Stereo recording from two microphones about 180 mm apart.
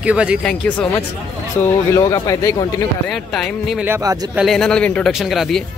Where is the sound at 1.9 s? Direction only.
20° left (ahead or behind).